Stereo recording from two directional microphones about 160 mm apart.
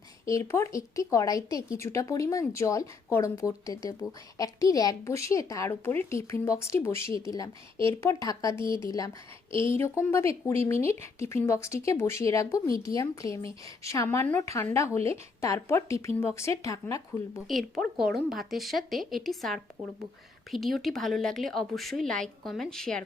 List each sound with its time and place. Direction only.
0.3 s speech: 20° left (ahead or behind)
17.5 s a woman's voice: centre (ahead or behind)